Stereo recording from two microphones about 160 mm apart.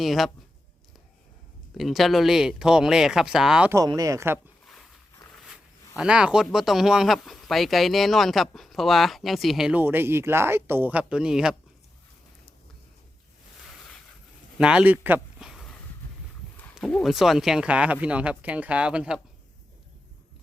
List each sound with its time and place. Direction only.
0.0 s speech: centre (ahead or behind)
1.8 s speech: centre (ahead or behind)
3.8 s speech: 20° right (ahead or behind)
4.6 s a sound: 5° left (ahead or behind)
6.0 s speech: 5° right (ahead or behind)
14.6 s speech: 5° right (ahead or behind)